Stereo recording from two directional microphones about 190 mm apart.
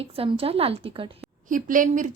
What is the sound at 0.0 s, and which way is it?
A woman's voice, 30° right (ahead or behind).